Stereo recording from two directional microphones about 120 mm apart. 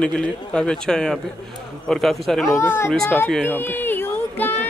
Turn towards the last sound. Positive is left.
turn(degrees=15)  # may be behind; listen again after turning